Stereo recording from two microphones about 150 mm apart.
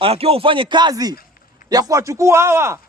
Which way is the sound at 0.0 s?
40° right (ahead or behind).